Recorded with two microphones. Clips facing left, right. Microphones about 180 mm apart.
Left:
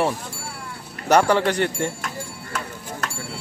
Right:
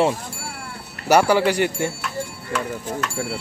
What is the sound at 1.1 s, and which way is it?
Speech, 10° right (ahead or behind).